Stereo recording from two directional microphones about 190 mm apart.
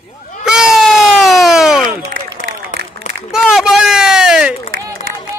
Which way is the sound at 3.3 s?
5° right (ahead or behind).